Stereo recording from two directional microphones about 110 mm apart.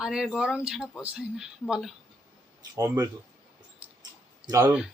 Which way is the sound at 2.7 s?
30° right (ahead or behind).